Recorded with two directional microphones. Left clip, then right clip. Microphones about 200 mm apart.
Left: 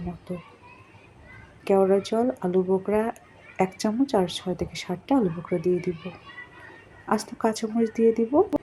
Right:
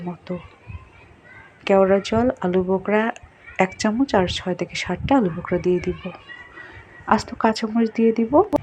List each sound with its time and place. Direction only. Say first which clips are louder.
0.3 s a child's voice: right 5 dB; 25° right (ahead or behind)
1.6 s a woman's voice: right 4 dB; 15° right (ahead or behind)
7.0 s a woman's voice: right 6 dB; 10° right (ahead or behind)